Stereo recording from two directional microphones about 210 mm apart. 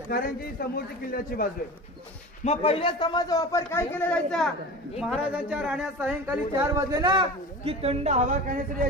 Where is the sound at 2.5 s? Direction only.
25° left (ahead or behind).